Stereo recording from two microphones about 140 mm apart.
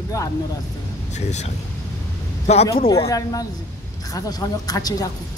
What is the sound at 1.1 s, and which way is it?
Speech, 55° left (ahead or behind).